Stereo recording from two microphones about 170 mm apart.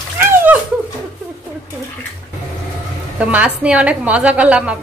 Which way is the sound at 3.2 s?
10° right (ahead or behind).